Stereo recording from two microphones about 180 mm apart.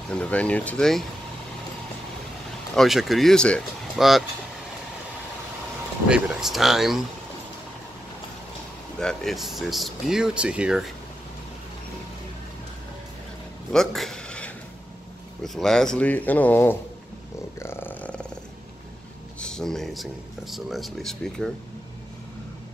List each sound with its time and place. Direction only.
0.1 s speech: 5° left (ahead or behind)
2.7 s speech: centre (ahead or behind)
6.0 s speech: 5° right (ahead or behind)
8.9 s speech: 5° left (ahead or behind)
13.7 s a sound: centre (ahead or behind)
15.4 s speech: centre (ahead or behind)
17.6 s purr: 15° left (ahead or behind)
19.4 s speech: 5° left (ahead or behind)